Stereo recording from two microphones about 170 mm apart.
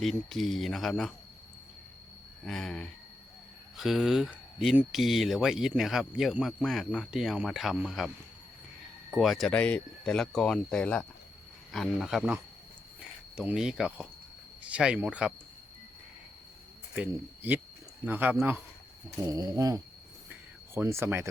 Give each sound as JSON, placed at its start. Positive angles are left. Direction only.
{"t": 0.0, "sound": "speech", "side_deg": 0}
{"t": 2.4, "sound": "speech", "side_deg": 5}
{"t": 16.9, "sound": "speech", "side_deg": -10}
{"t": 19.1, "sound": "a sound", "side_deg": -20}
{"t": 20.3, "sound": "cricket", "side_deg": -15}